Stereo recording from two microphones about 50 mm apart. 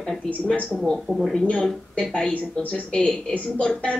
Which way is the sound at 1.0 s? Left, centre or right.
Centre.